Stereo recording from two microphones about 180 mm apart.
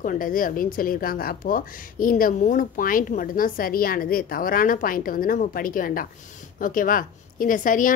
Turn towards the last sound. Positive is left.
turn(degrees=50)  # may be behind; listen again after turning